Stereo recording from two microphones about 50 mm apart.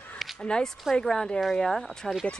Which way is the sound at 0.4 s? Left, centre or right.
Centre.